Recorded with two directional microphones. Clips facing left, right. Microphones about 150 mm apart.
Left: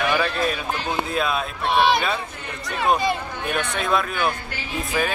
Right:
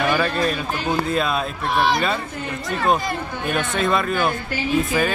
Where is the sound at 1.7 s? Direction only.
25° left (ahead or behind).